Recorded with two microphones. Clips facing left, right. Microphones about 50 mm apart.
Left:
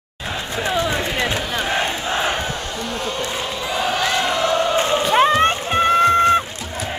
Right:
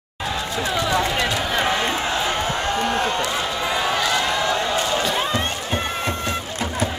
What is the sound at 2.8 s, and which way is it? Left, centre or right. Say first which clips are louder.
Speech: right 2 dB; right.